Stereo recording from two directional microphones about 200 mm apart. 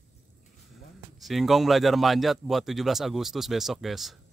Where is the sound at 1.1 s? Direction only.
Centre (ahead or behind).